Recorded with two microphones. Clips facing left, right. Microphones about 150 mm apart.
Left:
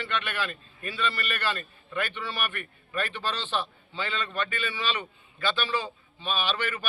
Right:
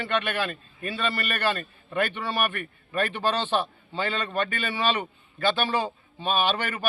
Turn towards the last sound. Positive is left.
turn(degrees=-45)  # may be behind; listen again after turning